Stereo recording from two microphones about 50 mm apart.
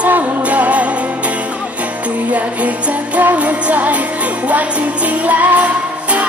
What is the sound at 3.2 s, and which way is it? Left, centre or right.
Music, right.